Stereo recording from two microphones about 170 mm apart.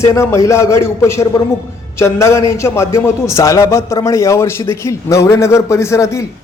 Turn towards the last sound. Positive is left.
turn(degrees=15)  # may be behind; listen again after turning